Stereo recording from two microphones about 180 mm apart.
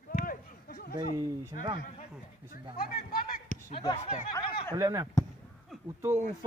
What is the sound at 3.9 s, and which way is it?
Speech, 40° left (ahead or behind).